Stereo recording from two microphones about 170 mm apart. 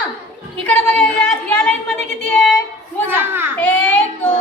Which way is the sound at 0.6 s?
10° left (ahead or behind).